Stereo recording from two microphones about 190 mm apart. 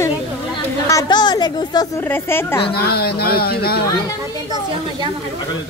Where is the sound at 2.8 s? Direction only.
55° left (ahead or behind).